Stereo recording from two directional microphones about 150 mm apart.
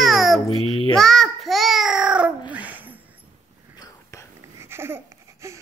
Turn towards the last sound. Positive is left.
turn(degrees=-20)  # may be behind; listen again after turning